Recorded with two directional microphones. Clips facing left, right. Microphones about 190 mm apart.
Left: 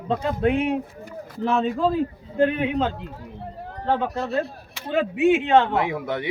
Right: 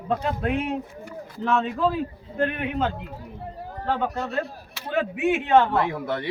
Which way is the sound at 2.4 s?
20° left (ahead or behind).